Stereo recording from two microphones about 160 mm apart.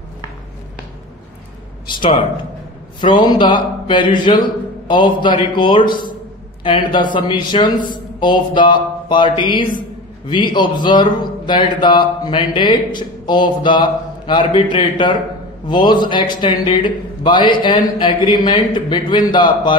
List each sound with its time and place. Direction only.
1.9 s a man's voice: 30° left (ahead or behind)